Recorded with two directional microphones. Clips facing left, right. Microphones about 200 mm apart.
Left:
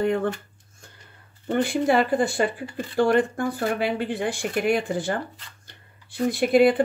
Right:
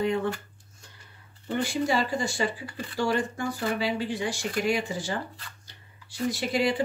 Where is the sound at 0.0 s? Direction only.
55° left (ahead or behind).